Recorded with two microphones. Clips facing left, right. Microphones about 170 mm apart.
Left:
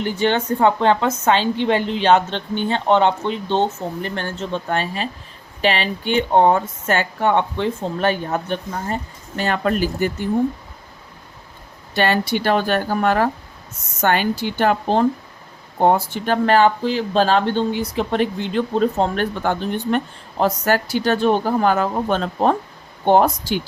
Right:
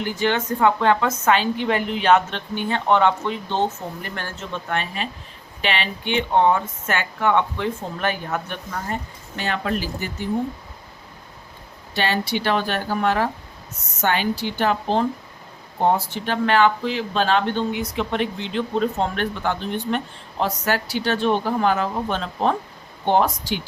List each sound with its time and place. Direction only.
0.0 s a woman's voice: 30° left (ahead or behind)
9.3 s speech: 45° left (ahead or behind)
11.9 s speech: 50° left (ahead or behind)